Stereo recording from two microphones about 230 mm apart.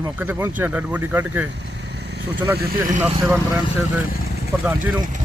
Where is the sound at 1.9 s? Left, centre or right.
Right.